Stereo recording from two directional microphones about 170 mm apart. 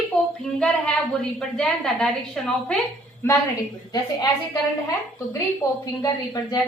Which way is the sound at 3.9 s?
20° left (ahead or behind).